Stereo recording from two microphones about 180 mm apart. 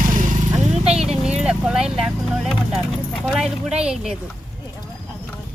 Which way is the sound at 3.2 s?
5° right (ahead or behind).